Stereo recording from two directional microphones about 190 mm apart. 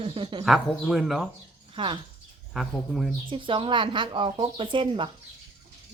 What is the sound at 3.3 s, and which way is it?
A woman's voice, 25° right (ahead or behind).